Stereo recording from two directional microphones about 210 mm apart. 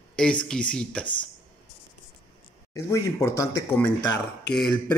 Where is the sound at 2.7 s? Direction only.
15° left (ahead or behind).